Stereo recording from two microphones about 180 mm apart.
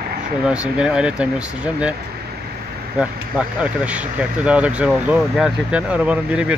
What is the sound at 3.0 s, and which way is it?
Speech, 5° right (ahead or behind).